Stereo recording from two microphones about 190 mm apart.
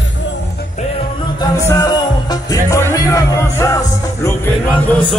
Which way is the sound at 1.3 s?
20° left (ahead or behind).